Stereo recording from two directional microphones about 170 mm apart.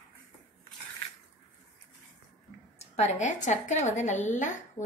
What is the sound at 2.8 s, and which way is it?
A woman's voice, 40° left (ahead or behind).